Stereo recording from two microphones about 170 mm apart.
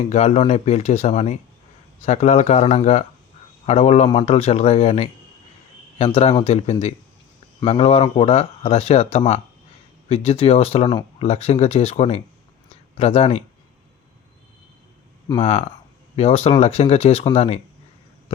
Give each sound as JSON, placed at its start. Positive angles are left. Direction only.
{"t": 0.1, "sound": "speech", "side_deg": 40}
{"t": 6.1, "sound": "speech", "side_deg": 35}
{"t": 15.4, "sound": "speech", "side_deg": 40}